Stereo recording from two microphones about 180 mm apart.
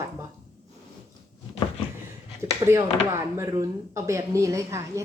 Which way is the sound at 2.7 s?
15° right (ahead or behind).